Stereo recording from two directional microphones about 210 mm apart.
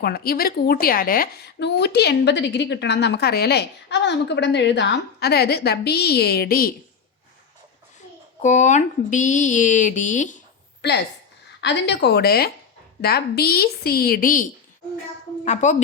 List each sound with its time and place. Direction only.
0.0 s a woman's voice: 45° left (ahead or behind)
8.4 s speech: 35° left (ahead or behind)
10.8 s a woman's voice: 50° left (ahead or behind)
15.4 s speech: 35° left (ahead or behind)